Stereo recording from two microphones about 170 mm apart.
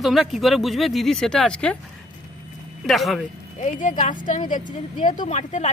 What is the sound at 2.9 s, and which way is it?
Speech, centre (ahead or behind).